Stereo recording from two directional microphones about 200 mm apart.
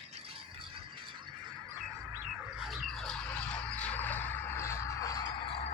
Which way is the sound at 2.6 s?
Centre (ahead or behind).